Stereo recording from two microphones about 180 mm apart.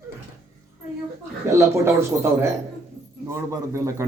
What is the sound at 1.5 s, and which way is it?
Speech, 15° right (ahead or behind).